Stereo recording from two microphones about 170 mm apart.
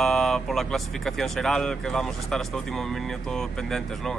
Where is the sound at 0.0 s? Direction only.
5° left (ahead or behind).